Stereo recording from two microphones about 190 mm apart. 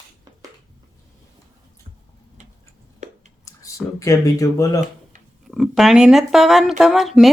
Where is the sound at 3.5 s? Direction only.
15° left (ahead or behind).